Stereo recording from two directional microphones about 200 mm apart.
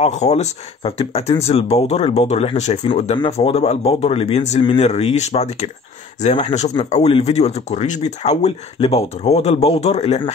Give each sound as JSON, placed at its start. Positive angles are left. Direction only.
{"t": 0.0, "sound": "speech", "side_deg": 35}